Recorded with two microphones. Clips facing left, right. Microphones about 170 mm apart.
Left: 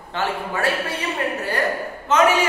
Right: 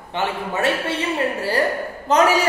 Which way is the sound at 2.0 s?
35° right (ahead or behind).